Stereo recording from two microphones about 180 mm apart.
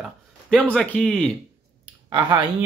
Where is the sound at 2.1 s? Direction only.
25° right (ahead or behind).